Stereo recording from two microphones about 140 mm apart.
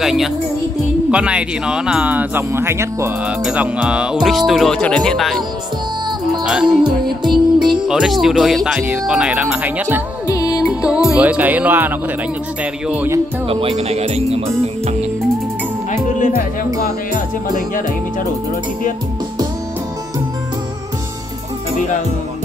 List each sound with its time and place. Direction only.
0.0 s speech: centre (ahead or behind); by 3.1 s 20° right (ahead or behind)
3.3 s speech: 10° right (ahead or behind)
6.4 s music: 5° right (ahead or behind)
6.7 s music: 35° right (ahead or behind)
7.8 s speech: 5° right (ahead or behind)
10.2 s music: 25° left (ahead or behind)
10.6 s music: 5° right (ahead or behind)
12.8 s speech: 10° right (ahead or behind)
13.5 s speech: 45° right (ahead or behind)
15.9 s music: 65° left (ahead or behind)